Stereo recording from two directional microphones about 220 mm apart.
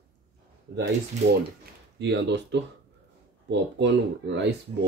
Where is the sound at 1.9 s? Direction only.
55° right (ahead or behind).